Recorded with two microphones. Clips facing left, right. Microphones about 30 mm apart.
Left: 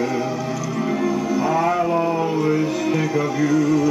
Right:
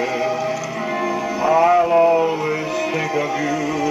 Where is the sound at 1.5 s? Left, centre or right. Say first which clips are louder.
Right 8 dB; right.